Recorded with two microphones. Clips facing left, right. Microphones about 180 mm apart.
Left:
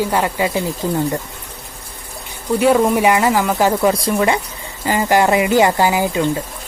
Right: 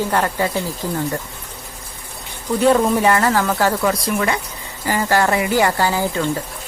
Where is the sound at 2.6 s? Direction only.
10° left (ahead or behind).